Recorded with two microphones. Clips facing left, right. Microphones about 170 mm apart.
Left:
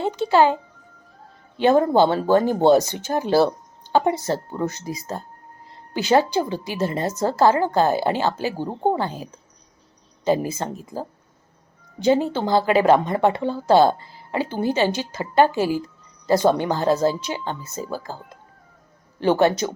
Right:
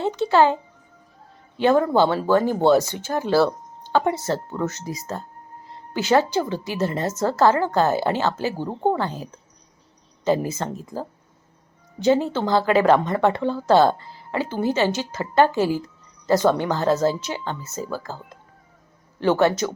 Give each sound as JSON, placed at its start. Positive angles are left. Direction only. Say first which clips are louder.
{"t": 0.0, "sound": "speech", "louder": "even", "side_deg": 15}
{"t": 1.5, "sound": "a man's voice", "louder": "left 1 dB", "side_deg": 20}
{"t": 11.9, "sound": "speech", "louder": "even", "side_deg": 15}
{"t": 19.2, "sound": "speech", "louder": "left 1 dB", "side_deg": 15}